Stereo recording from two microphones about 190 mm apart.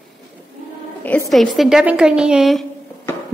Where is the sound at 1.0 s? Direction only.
10° left (ahead or behind).